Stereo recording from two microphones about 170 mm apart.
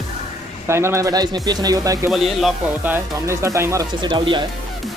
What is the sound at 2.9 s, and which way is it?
Speech, 15° right (ahead or behind).